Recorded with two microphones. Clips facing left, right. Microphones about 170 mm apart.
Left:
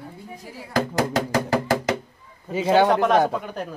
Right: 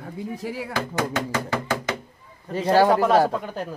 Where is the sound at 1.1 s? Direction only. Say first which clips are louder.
Left 4 dB; 35° left (ahead or behind).